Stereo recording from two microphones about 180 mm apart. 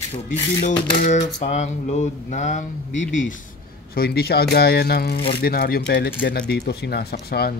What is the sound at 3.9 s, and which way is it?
Speech, 60° left (ahead or behind).